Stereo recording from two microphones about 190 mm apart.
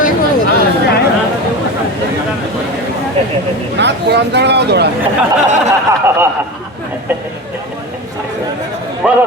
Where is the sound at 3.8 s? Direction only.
65° right (ahead or behind).